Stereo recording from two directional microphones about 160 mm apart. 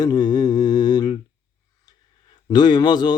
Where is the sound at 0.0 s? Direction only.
25° left (ahead or behind).